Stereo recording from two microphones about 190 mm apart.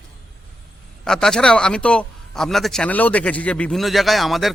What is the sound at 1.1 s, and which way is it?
A man's voice, 5° left (ahead or behind).